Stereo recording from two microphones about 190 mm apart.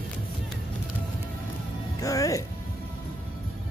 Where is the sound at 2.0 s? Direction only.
15° left (ahead or behind).